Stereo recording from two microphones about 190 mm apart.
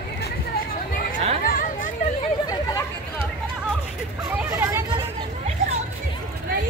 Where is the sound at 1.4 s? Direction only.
45° left (ahead or behind).